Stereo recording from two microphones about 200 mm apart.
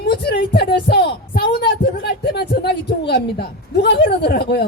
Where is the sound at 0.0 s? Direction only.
55° left (ahead or behind).